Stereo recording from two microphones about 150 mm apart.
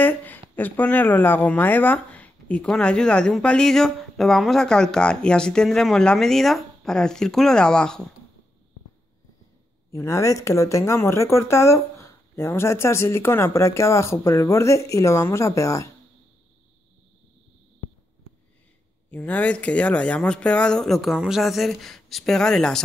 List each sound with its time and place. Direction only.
0.0 s speech: 10° left (ahead or behind)
9.8 s speech: 20° left (ahead or behind)
19.0 s speech: 10° left (ahead or behind)